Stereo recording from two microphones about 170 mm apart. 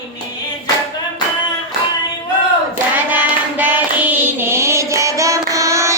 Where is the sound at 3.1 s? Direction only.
10° right (ahead or behind).